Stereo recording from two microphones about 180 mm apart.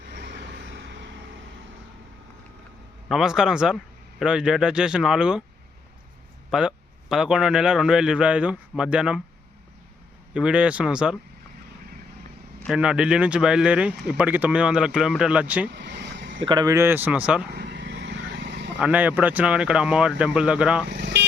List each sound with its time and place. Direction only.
0.0 s vehicle: 70° right (ahead or behind); by 1.5 s 90° right
3.1 s speech: centre (ahead or behind)
6.5 s speech: 5° right (ahead or behind)
10.3 s speech: 5° right (ahead or behind)
12.6 s speech: 5° right (ahead or behind)
15.7 s vehicle: 75° right (ahead or behind)
16.4 s speech: 25° right (ahead or behind); by 17.4 s 5° right (ahead or behind)
17.5 s vehicle: 70° right (ahead or behind)
18.8 s speech: 10° right (ahead or behind)
20.8 s vehicle: 75° right (ahead or behind)